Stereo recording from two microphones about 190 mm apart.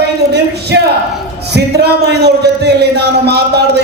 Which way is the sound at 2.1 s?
60° right (ahead or behind).